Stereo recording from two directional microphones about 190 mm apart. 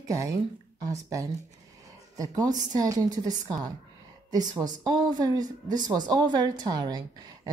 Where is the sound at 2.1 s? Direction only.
20° right (ahead or behind).